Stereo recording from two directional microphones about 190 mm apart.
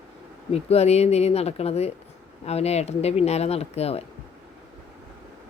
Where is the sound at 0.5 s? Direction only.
35° left (ahead or behind).